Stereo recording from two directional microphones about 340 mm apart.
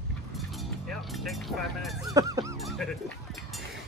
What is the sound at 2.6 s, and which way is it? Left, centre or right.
Music, centre.